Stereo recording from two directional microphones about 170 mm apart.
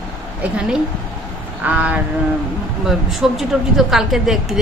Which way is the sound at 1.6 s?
10° right (ahead or behind).